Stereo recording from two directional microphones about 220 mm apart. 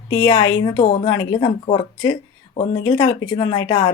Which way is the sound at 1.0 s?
20° left (ahead or behind).